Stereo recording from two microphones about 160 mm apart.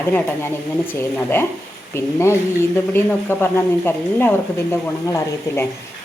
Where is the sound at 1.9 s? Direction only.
15° left (ahead or behind).